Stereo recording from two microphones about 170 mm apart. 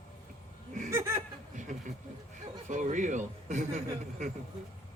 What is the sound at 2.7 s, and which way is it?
Speech, 50° right (ahead or behind).